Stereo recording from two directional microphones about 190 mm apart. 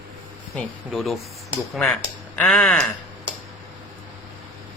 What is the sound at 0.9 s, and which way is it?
Speech, centre (ahead or behind).